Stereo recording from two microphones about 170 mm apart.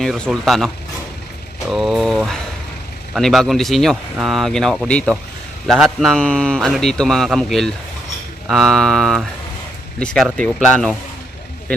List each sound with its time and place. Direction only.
0.0 s a man's voice: centre (ahead or behind)
1.7 s a man's voice: centre (ahead or behind)